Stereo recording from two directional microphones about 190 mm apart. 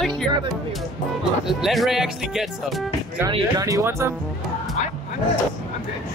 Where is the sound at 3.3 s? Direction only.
20° right (ahead or behind).